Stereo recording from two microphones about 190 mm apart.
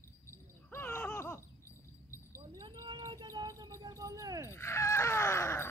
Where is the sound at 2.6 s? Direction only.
20° right (ahead or behind).